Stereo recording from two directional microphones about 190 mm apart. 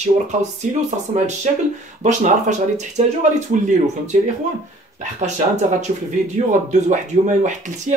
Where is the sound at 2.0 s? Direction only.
40° right (ahead or behind).